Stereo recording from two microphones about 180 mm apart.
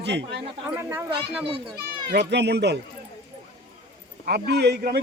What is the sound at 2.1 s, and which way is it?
Speech, 70° right (ahead or behind).